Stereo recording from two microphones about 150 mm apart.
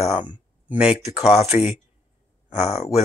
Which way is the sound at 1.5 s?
55° left (ahead or behind).